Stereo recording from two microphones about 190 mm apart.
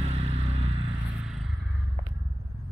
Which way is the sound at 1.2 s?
Centre (ahead or behind).